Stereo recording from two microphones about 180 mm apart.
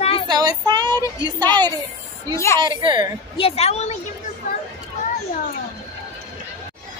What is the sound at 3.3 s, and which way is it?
Speech, 35° left (ahead or behind).